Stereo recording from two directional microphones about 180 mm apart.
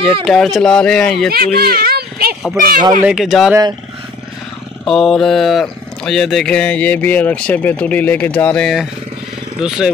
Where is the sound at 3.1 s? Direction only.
Centre (ahead or behind).